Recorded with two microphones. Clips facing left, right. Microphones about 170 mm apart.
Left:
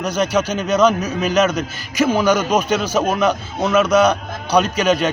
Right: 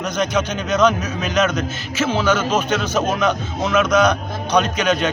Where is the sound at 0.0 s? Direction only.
10° left (ahead or behind).